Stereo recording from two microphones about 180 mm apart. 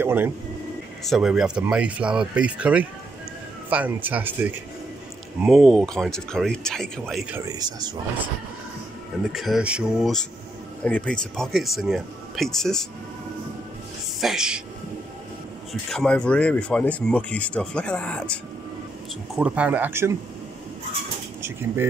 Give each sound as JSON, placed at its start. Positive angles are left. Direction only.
{"t": 0.0, "sound": "a sound", "side_deg": -10}
{"t": 1.0, "sound": "speech", "side_deg": 0}
{"t": 7.3, "sound": "speech", "side_deg": -20}
{"t": 9.3, "sound": "speech", "side_deg": 0}
{"t": 14.2, "sound": "speech", "side_deg": -5}
{"t": 15.9, "sound": "speech", "side_deg": 5}
{"t": 19.3, "sound": "speech", "side_deg": -5}
{"t": 21.4, "sound": "speech", "side_deg": -15}